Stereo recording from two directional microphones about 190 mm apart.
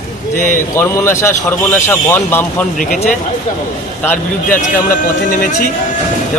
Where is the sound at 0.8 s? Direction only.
15° left (ahead or behind).